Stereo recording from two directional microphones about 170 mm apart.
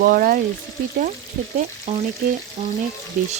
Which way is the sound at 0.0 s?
55° right (ahead or behind).